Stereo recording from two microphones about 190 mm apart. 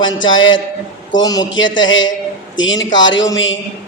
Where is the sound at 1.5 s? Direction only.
80° left.